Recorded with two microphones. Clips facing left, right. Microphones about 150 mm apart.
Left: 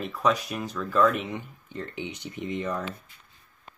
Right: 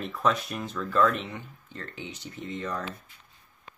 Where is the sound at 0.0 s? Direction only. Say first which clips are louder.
Left 2 dB; 5° left (ahead or behind).